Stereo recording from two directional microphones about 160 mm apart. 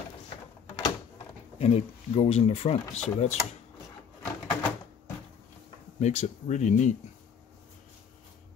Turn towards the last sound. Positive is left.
turn(degrees=50)  # may be behind; listen again after turning